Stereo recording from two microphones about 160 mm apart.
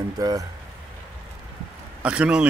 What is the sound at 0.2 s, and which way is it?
Speech, 20° right (ahead or behind).